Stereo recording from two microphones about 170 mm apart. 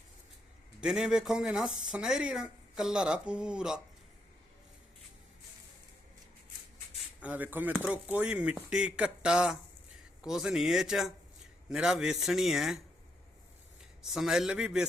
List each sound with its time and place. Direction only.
0.8 s speech: 5° right (ahead or behind)
7.2 s speech: 10° right (ahead or behind)
14.0 s speech: centre (ahead or behind)